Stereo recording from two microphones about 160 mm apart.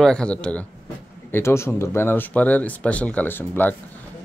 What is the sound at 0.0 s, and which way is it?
Speech, 5° left (ahead or behind).